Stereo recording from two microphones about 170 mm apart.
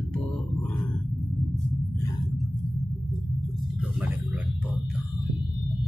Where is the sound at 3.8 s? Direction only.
5° right (ahead or behind).